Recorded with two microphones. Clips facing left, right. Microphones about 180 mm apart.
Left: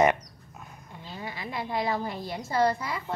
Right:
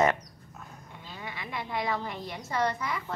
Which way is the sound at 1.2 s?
35° left (ahead or behind).